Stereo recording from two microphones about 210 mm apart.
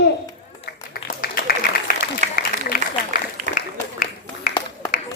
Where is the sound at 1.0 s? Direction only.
45° left (ahead or behind).